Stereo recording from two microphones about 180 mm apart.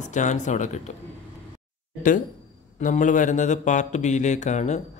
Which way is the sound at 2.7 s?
45° left (ahead or behind).